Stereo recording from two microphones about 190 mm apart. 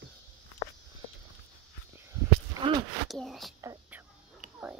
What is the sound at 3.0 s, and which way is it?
Speech, centre (ahead or behind).